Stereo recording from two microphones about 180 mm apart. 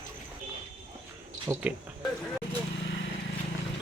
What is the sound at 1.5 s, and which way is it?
Speech, 20° right (ahead or behind).